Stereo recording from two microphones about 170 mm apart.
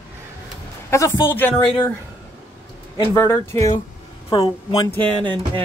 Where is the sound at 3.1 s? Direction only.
15° left (ahead or behind).